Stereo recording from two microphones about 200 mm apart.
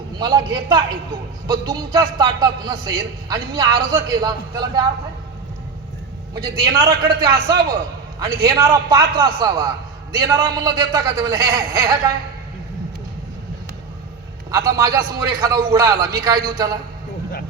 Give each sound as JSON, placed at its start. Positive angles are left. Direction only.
{"t": 0.2, "sound": "a man's voice", "side_deg": -20}
{"t": 6.3, "sound": "a man's voice", "side_deg": -20}
{"t": 14.5, "sound": "a man's voice", "side_deg": -20}